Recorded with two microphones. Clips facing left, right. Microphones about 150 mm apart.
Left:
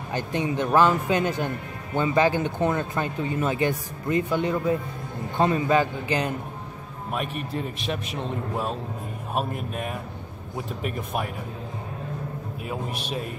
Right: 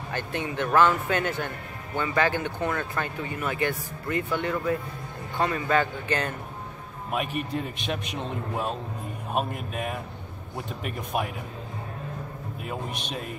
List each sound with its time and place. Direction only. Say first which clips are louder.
0.1 s speech: left 5 dB; 15° left (ahead or behind)
7.1 s a man's voice: right 1 dB; centre (ahead or behind)
12.6 s a man's voice: left 2 dB; centre (ahead or behind)